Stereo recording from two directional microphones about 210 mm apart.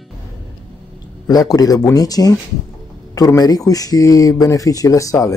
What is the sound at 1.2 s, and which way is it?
Speech, 15° left (ahead or behind).